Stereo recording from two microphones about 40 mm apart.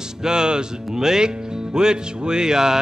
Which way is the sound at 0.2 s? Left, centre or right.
Centre.